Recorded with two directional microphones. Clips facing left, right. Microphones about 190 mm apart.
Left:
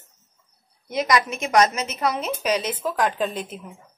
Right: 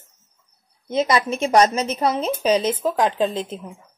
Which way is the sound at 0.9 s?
25° right (ahead or behind).